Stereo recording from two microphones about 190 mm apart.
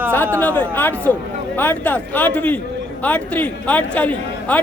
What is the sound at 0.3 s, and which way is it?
A man's voice, 10° left (ahead or behind).